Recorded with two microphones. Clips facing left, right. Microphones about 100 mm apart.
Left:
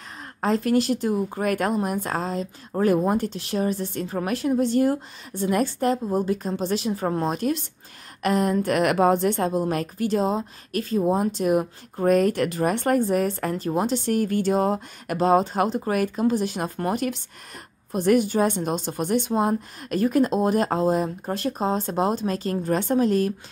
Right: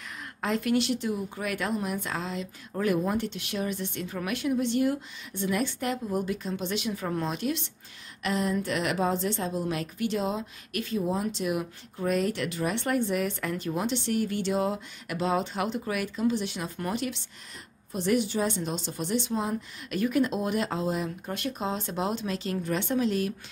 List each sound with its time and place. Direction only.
0.4 s speech: 35° left (ahead or behind)